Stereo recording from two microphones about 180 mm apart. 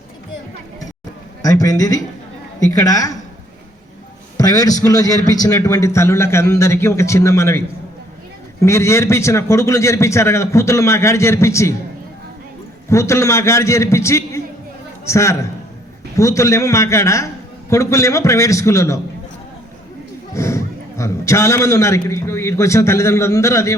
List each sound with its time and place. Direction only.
1.4 s a man's voice: 20° left (ahead or behind)
4.4 s a man's voice: 20° left (ahead or behind)
8.6 s a man's voice: 15° left (ahead or behind)
12.9 s a man's voice: 15° left (ahead or behind)
20.3 s a man's voice: 15° left (ahead or behind)